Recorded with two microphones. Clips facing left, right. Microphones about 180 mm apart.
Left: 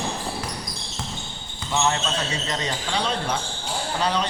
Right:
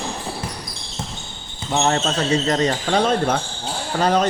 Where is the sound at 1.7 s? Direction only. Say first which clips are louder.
Right 4 dB; 50° right (ahead or behind).